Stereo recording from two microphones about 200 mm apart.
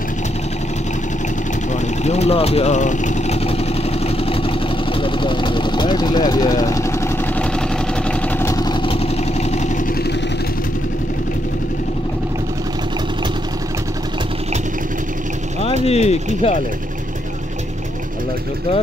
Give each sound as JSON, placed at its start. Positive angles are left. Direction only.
{"t": 1.7, "sound": "vehicle", "side_deg": 35}
{"t": 5.0, "sound": "engine", "side_deg": 25}
{"t": 8.1, "sound": "vehicle", "side_deg": 10}
{"t": 15.8, "sound": "speech", "side_deg": 30}